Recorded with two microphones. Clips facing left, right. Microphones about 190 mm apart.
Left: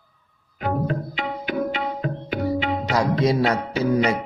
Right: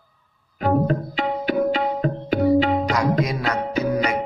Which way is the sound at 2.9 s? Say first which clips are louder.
Left 2 dB; 30° left (ahead or behind).